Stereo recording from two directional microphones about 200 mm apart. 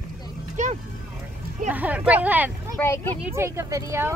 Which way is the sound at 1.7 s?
10° right (ahead or behind).